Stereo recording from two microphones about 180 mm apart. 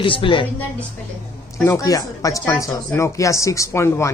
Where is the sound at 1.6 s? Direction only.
20° left (ahead or behind).